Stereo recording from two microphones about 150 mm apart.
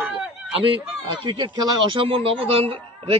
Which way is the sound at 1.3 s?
35° right (ahead or behind).